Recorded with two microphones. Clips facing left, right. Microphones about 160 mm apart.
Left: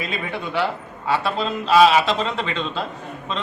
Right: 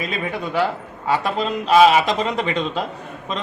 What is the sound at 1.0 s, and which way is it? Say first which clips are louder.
Speech: right 1 dB; 15° right (ahead or behind).